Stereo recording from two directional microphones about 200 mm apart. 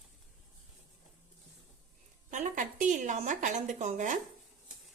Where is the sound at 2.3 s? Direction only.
40° right (ahead or behind).